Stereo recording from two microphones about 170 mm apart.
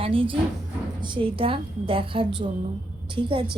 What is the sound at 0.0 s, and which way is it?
A woman's voice, 30° right (ahead or behind).